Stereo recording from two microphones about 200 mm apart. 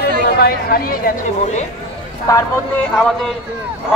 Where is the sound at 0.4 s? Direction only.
50° left (ahead or behind).